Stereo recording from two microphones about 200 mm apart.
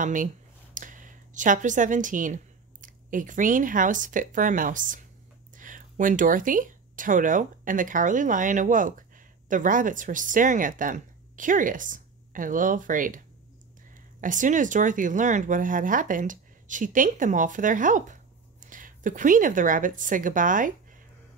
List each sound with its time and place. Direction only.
0.0 s a woman's voice: 40° right (ahead or behind)
14.2 s speech: 40° right (ahead or behind)